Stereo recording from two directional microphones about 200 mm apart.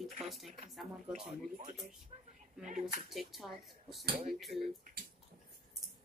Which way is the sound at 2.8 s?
Centre (ahead or behind).